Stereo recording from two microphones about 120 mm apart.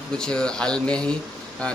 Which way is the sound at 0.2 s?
5° left (ahead or behind).